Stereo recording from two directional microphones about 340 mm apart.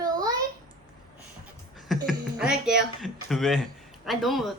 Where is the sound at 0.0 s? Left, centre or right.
Centre.